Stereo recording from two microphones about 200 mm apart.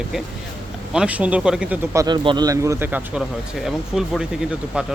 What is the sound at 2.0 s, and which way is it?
Speech, 20° right (ahead or behind).